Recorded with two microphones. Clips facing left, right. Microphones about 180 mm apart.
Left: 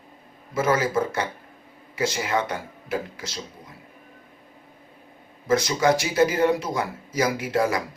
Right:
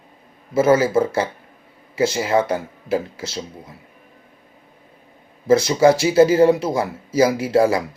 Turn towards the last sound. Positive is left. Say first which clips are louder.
# right 7 dB
turn(degrees=-30)  # may be behind; listen again after turning